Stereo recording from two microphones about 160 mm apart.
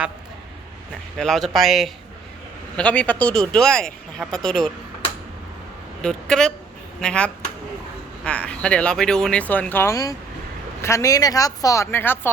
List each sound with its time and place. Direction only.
1.2 s speech: centre (ahead or behind)
6.0 s a woman's voice: 5° left (ahead or behind)